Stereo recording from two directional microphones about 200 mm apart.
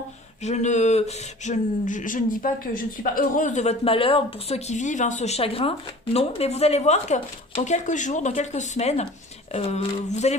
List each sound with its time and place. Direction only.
0.4 s speech: 35° left (ahead or behind)